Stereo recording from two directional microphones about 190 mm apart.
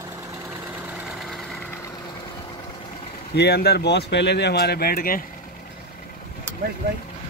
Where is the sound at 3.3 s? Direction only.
60° left (ahead or behind).